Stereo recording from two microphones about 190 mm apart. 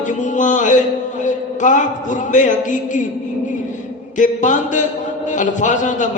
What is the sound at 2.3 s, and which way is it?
Speech, 40° left (ahead or behind).